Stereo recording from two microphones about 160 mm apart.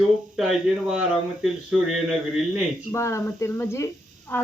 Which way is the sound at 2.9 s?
20° left (ahead or behind).